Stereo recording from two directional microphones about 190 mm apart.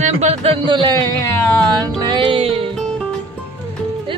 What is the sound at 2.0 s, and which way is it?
Music, 25° right (ahead or behind).